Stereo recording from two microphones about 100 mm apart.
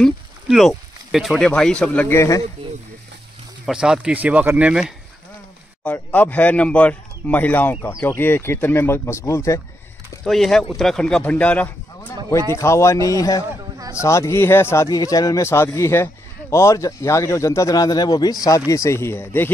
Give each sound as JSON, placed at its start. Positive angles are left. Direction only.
{"t": 0.0, "sound": "a sound", "side_deg": 0}
{"t": 1.5, "sound": "a man's voice", "side_deg": 10}
{"t": 2.0, "sound": "speech", "side_deg": 30}
{"t": 3.6, "sound": "speech", "side_deg": -5}
{"t": 6.1, "sound": "a man's voice", "side_deg": 15}
{"t": 10.2, "sound": "a man's voice", "side_deg": 5}
{"t": 12.5, "sound": "a man's voice", "side_deg": 30}